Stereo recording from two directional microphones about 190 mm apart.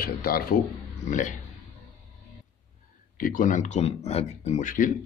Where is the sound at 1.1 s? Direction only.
40° left (ahead or behind).